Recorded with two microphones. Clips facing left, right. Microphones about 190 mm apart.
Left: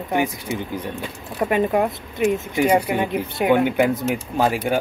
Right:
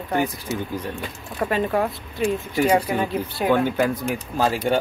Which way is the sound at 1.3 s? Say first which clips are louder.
Left 3 dB; 15° left (ahead or behind).